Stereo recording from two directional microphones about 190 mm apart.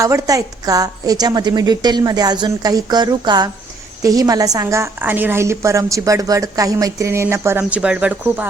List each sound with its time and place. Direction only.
0.0 s a woman's voice: 15° right (ahead or behind)